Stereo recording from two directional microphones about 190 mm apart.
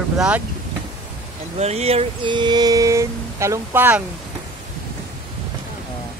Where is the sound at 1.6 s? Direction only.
35° right (ahead or behind); by 4.0 s 10° right (ahead or behind).